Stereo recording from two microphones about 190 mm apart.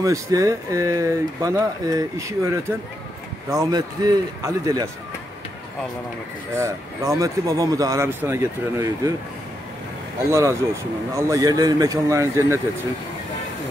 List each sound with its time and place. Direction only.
0.0 s speech: 15° right (ahead or behind)
6.5 s speech: 15° right (ahead or behind)
10.3 s speech: 15° right (ahead or behind)